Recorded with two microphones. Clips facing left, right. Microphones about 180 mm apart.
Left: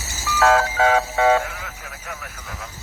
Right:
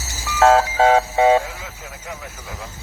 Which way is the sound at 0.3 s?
30° right (ahead or behind).